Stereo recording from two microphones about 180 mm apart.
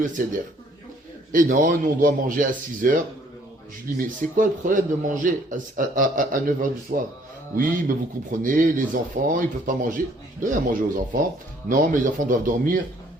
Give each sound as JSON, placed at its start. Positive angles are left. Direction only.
{"t": 0.2, "sound": "speech", "side_deg": -50}
{"t": 4.2, "sound": "speech", "side_deg": -45}